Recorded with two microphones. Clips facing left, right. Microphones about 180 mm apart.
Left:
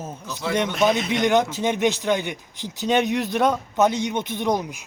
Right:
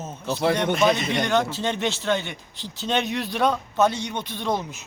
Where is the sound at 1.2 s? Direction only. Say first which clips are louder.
Left 3 dB; 20° left (ahead or behind).